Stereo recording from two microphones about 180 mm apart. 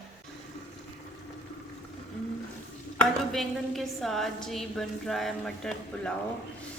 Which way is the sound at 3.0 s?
Centre (ahead or behind).